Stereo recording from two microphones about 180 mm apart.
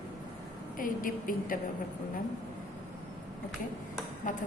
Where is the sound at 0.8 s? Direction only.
50° left (ahead or behind).